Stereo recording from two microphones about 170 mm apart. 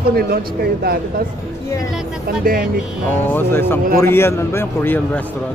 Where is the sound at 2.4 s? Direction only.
55° right (ahead or behind).